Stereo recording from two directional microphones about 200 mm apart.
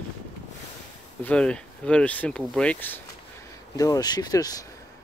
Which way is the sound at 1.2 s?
5° left (ahead or behind).